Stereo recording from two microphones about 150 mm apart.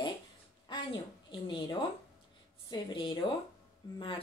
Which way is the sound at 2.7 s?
30° left (ahead or behind).